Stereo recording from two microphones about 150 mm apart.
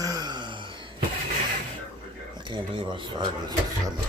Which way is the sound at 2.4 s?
35° right (ahead or behind).